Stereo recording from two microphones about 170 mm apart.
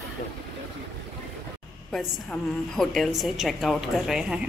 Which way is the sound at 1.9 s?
5° left (ahead or behind).